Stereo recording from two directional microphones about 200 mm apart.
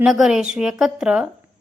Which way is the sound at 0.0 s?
Centre (ahead or behind).